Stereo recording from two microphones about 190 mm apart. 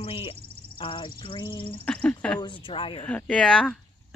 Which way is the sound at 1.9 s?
5° left (ahead or behind).